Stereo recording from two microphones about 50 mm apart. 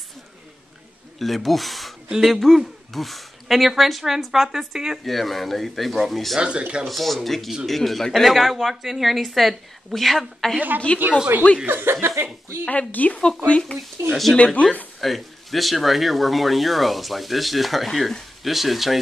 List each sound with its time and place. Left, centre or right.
1.2 s speech: centre
5.0 s speech: centre
6.4 s speech: right
6.9 s speech: centre
10.9 s speech: left
11.6 s speech: right
12.6 s speech: left
14.0 s speech: right
14.3 s speech: left
15.0 s speech: centre